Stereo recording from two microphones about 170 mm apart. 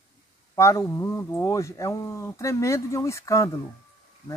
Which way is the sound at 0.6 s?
15° left (ahead or behind).